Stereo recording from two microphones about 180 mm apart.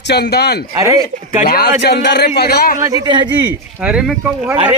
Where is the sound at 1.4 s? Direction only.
55° left (ahead or behind).